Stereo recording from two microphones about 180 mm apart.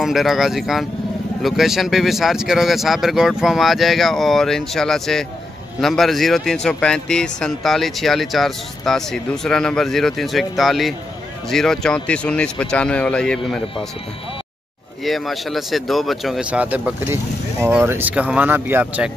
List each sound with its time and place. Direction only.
0.0 s speech: centre (ahead or behind)
15.0 s speech: centre (ahead or behind)